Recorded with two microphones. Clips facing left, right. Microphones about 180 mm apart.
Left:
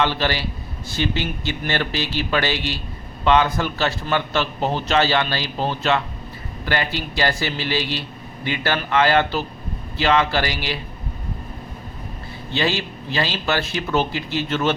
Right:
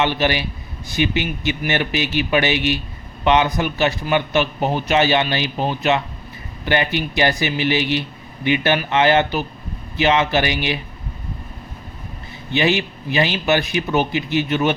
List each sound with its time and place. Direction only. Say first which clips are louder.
0.0 s a man's voice: right 2 dB; 20° right (ahead or behind)
12.5 s a man's voice: right 4 dB; 20° right (ahead or behind)